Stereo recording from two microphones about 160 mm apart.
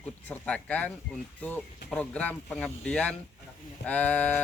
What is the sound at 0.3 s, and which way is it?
Speech, 10° left (ahead or behind).